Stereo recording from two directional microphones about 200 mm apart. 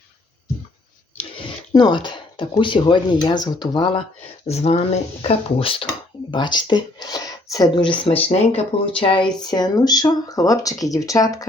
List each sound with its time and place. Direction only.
1.5 s speech: 20° left (ahead or behind)